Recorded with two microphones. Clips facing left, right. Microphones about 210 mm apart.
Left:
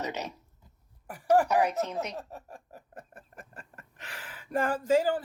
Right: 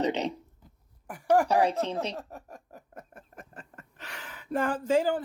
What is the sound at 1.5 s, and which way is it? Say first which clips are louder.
Speech: right 2 dB; 30° right (ahead or behind).